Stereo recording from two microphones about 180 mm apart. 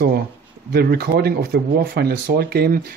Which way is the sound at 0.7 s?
60° right (ahead or behind).